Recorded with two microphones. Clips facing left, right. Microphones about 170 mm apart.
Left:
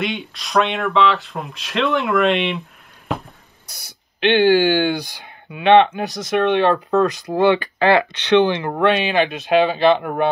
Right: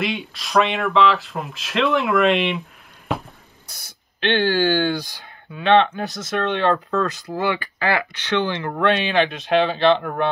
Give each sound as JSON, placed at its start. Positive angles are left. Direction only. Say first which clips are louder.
{"t": 0.0, "sound": "speech", "louder": "left 1 dB", "side_deg": 0}
{"t": 3.1, "sound": "a sound", "louder": "even", "side_deg": 0}
{"t": 4.2, "sound": "speech", "louder": "left 5 dB", "side_deg": 15}